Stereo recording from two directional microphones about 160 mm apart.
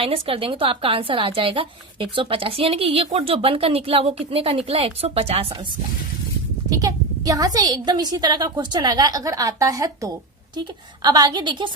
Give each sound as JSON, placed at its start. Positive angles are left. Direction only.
{"t": 0.0, "sound": "a woman's voice", "side_deg": -35}
{"t": 6.7, "sound": "a woman's voice", "side_deg": -20}